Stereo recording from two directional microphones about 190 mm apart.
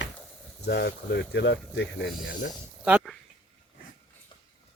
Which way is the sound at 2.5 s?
5° right (ahead or behind).